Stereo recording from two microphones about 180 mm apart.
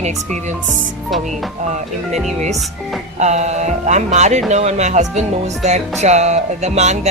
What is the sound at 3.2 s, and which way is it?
A woman's voice, 40° right (ahead or behind).